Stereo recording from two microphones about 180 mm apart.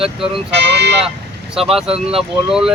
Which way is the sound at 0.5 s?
70° right (ahead or behind).